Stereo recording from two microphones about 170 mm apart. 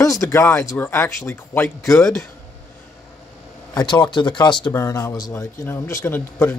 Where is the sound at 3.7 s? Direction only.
25° left (ahead or behind).